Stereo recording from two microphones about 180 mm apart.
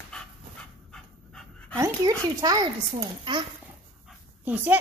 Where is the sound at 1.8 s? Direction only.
20° right (ahead or behind).